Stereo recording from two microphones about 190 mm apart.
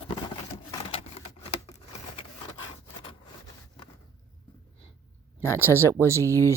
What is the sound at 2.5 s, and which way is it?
Rub, 25° left (ahead or behind).